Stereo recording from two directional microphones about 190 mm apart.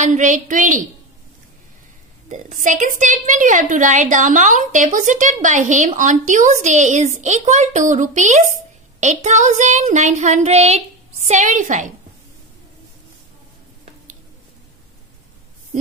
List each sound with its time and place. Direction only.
0.0 s a woman's voice: 40° right (ahead or behind)
2.2 s a woman's voice: 40° right (ahead or behind)